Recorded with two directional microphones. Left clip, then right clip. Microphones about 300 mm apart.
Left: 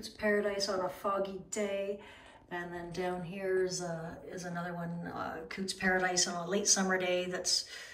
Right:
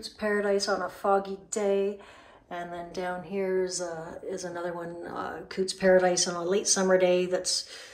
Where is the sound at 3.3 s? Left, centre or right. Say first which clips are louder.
Right 5 dB; centre.